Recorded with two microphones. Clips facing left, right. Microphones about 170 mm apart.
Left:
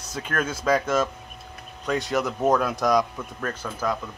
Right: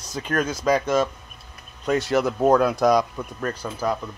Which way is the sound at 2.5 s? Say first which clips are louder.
Right 4 dB; centre (ahead or behind).